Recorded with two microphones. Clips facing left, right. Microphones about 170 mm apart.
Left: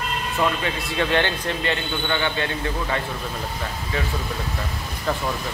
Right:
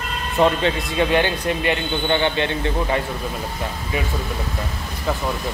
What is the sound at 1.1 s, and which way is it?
A man's voice, 15° right (ahead or behind).